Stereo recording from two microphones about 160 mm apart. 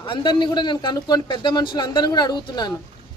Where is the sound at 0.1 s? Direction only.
30° left (ahead or behind).